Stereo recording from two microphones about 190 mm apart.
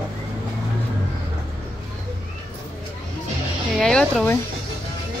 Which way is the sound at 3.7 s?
Centre (ahead or behind).